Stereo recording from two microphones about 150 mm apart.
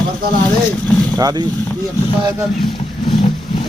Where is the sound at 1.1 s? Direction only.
25° right (ahead or behind).